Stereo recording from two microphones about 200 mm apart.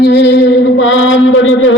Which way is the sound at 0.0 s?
60° left (ahead or behind).